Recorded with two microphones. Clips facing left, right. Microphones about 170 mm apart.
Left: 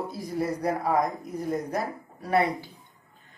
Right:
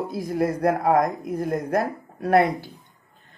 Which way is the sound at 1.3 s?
60° right (ahead or behind).